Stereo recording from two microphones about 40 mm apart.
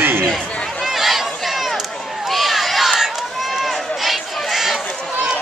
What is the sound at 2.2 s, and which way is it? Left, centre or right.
Run, centre.